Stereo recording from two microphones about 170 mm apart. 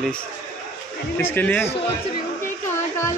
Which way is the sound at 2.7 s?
15° left (ahead or behind).